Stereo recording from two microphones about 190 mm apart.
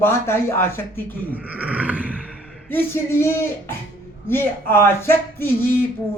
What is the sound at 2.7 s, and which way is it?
Speech, 10° left (ahead or behind).